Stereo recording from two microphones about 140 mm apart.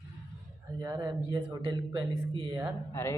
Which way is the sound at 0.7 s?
25° right (ahead or behind).